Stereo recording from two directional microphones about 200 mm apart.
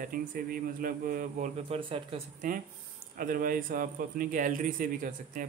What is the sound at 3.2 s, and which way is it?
Speech, 45° right (ahead or behind).